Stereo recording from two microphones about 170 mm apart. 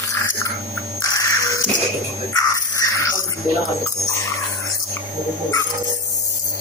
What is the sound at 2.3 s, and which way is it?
Dog, 20° left (ahead or behind).